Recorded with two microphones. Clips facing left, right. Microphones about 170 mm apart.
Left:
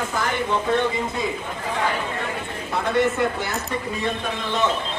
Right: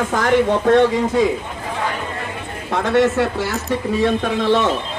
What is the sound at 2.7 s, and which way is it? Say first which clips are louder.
Speech: right 5 dB; 85° right.